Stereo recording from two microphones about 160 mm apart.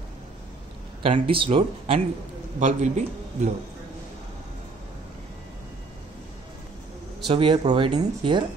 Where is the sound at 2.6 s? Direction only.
45° right (ahead or behind).